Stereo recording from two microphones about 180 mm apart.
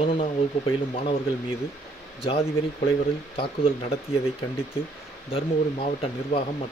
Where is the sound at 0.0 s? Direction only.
30° left (ahead or behind).